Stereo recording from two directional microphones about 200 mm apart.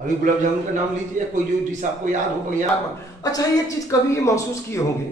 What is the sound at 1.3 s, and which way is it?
Speech, 40° right (ahead or behind).